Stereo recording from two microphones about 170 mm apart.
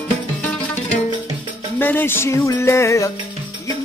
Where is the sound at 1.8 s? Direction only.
10° left (ahead or behind).